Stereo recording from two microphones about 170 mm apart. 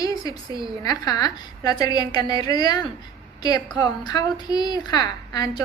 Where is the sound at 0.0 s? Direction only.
20° left (ahead or behind).